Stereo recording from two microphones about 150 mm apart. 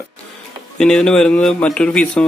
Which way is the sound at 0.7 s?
5° left (ahead or behind).